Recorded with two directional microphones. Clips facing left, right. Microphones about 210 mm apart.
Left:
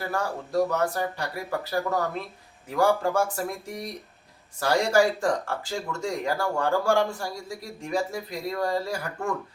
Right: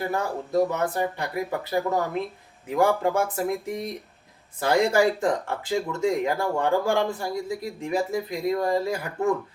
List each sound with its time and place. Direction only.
0.0 s speech: 20° right (ahead or behind)